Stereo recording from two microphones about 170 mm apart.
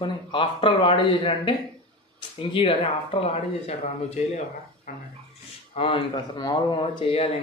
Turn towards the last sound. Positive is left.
turn(degrees=30)  # may be behind; listen again after turning